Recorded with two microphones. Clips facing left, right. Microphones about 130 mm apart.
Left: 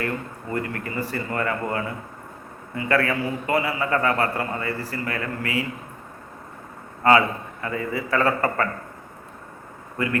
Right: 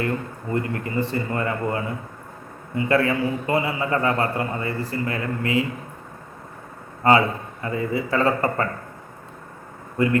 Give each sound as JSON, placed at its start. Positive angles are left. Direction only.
{"t": 0.5, "sound": "a man's voice", "side_deg": -25}
{"t": 7.0, "sound": "a man's voice", "side_deg": -25}